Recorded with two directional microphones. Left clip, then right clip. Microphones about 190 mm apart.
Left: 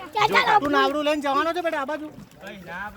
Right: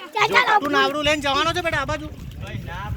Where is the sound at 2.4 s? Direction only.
10° left (ahead or behind).